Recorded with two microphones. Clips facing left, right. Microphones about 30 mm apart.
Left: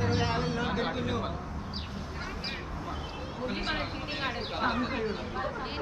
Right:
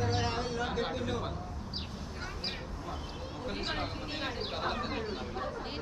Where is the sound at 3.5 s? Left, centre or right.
Centre.